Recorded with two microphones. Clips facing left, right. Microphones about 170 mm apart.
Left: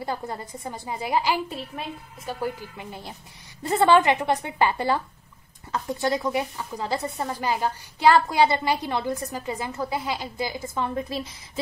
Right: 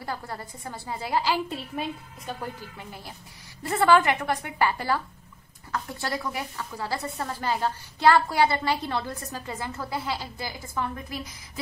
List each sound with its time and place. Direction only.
0.0 s speech: 20° left (ahead or behind)
1.5 s a woman's voice: centre (ahead or behind)
2.4 s speech: 20° left (ahead or behind)